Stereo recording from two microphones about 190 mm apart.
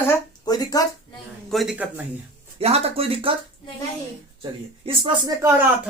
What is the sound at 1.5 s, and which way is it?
Speech, centre (ahead or behind).